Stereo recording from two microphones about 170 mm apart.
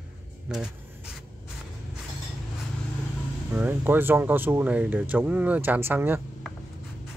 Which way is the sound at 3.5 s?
10° right (ahead or behind).